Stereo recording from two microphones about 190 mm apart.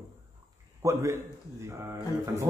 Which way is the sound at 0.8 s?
15° right (ahead or behind).